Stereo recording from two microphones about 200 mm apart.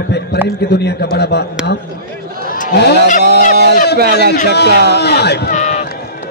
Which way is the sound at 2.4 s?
45° left (ahead or behind).